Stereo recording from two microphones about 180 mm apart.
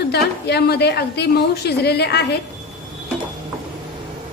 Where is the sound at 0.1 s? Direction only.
65° left (ahead or behind).